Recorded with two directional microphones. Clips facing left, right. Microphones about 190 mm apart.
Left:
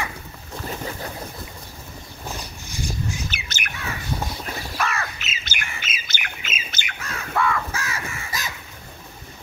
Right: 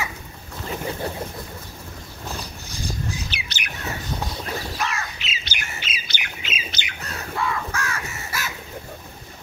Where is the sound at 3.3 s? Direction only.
45° left (ahead or behind).